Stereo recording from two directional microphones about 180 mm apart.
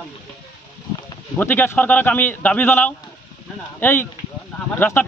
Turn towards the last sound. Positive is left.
turn(degrees=10)  # may be behind; listen again after turning